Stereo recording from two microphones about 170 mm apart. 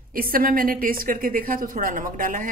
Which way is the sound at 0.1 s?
60° right (ahead or behind).